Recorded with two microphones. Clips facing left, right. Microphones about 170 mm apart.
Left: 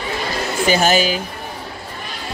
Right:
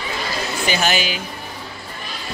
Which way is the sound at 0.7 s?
40° left (ahead or behind).